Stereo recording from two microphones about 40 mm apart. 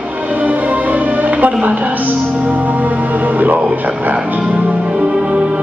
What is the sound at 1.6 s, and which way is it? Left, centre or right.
Speech, right.